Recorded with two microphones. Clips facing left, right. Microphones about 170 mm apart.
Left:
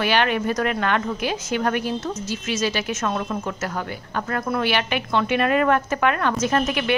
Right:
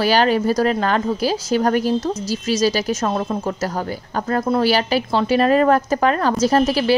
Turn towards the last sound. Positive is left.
turn(degrees=-35)  # may be behind; listen again after turning